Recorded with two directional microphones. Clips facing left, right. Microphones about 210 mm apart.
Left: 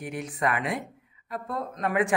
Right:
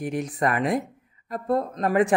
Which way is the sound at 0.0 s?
40° right (ahead or behind).